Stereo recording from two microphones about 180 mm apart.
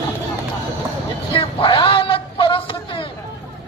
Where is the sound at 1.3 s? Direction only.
30° left (ahead or behind).